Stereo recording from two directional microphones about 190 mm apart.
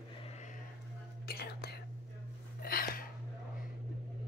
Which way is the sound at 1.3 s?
55° left (ahead or behind).